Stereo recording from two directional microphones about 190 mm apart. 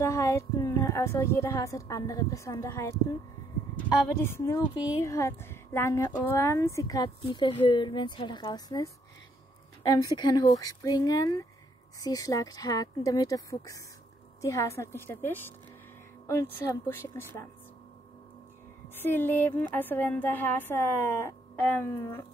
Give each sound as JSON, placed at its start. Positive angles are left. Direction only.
{"t": 0.0, "sound": "a woman's voice", "side_deg": 15}
{"t": 18.9, "sound": "a woman's voice", "side_deg": 10}